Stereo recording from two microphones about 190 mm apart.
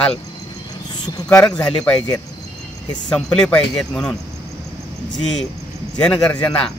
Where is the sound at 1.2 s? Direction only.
10° left (ahead or behind).